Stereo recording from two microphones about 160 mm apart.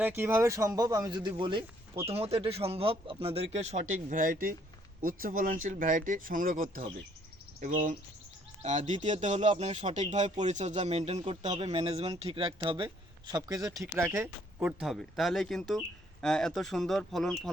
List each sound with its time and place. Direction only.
0.0 s speech: 15° right (ahead or behind); by 12.9 s 30° right (ahead or behind)
13.3 s speech: 20° right (ahead or behind); by 17.3 s 5° left (ahead or behind)